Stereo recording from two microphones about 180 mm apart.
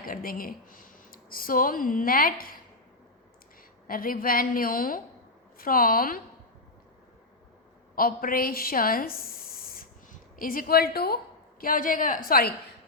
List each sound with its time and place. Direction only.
0.0 s speech: 55° left (ahead or behind)
3.8 s a woman's voice: 50° left (ahead or behind)
7.9 s a woman's voice: 55° left (ahead or behind)